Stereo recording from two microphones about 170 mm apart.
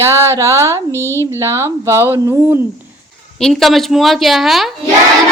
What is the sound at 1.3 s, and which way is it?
Speech, 15° right (ahead or behind).